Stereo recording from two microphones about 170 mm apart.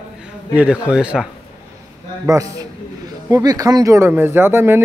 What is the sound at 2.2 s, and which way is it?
Speech, 20° right (ahead or behind).